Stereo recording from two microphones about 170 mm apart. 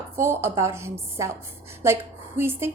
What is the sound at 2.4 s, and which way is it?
Speech, 15° right (ahead or behind).